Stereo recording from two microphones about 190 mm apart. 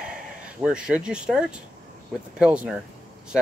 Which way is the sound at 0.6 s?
5° right (ahead or behind).